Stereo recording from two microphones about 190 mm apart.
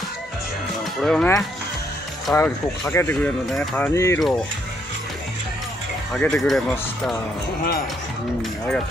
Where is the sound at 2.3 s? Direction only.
10° left (ahead or behind).